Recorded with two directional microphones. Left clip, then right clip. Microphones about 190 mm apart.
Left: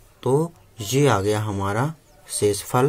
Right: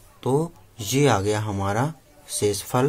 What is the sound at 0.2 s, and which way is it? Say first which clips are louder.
Speech: left 2 dB; 10° left (ahead or behind).